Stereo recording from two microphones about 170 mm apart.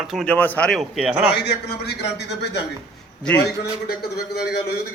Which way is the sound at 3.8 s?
65° left (ahead or behind).